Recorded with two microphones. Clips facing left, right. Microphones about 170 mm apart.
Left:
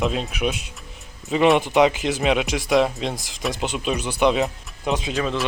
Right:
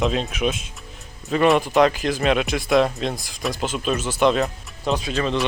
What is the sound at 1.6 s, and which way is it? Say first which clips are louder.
Speech: even; 20° left (ahead or behind).